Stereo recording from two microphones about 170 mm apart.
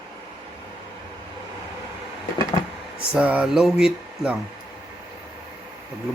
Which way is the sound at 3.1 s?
5° right (ahead or behind).